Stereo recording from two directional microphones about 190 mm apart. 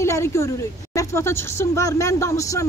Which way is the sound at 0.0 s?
15° left (ahead or behind).